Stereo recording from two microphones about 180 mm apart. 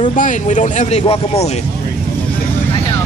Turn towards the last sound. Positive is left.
turn(degrees=35)  # may be behind; listen again after turning